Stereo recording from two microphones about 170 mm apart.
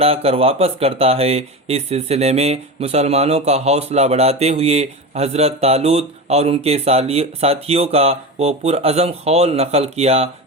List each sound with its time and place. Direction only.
0.0 s speech: 35° right (ahead or behind)